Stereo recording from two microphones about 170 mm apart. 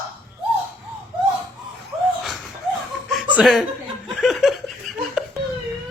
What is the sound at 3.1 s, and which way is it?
Chuckle, centre (ahead or behind).